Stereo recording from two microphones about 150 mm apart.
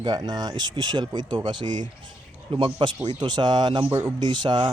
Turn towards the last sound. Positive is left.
turn(degrees=-30)  # may be behind; listen again after turning